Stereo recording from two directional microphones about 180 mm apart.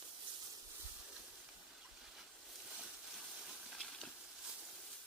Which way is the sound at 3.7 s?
Centre (ahead or behind).